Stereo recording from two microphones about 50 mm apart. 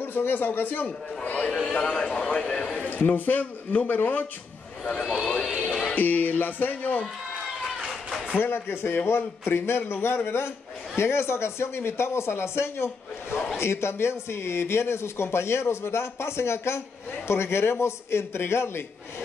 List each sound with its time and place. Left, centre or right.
0.0 s a man's voice: left
1.2 s speech: left
1.7 s a man's voice: centre
3.2 s speech: left
4.8 s speech: left
5.5 s music: centre
5.9 s speech: left
7.9 s a sound: centre
8.4 s a man's voice: left